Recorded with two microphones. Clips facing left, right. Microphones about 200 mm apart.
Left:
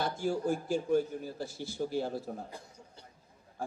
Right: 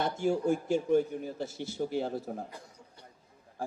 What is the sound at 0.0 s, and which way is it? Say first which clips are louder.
A man's voice: right 3 dB; 25° right (ahead or behind).